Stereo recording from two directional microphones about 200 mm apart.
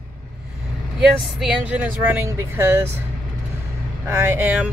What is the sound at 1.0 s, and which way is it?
Speech, 5° right (ahead or behind).